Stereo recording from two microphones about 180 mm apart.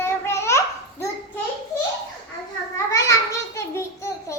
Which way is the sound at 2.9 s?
15° left (ahead or behind).